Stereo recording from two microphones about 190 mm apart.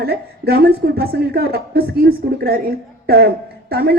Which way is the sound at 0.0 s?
55° right (ahead or behind).